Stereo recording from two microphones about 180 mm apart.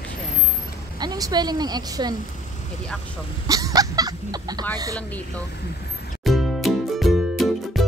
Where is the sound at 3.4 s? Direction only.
20° right (ahead or behind).